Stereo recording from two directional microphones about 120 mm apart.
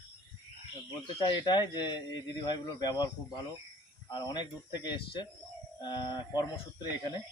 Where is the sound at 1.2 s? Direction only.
40° left (ahead or behind).